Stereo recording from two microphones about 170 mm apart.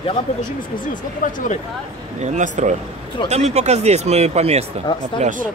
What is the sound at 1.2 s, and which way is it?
Speech, 50° left (ahead or behind).